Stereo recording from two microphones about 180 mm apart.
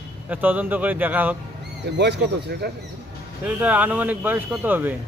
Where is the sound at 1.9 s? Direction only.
70° right (ahead or behind).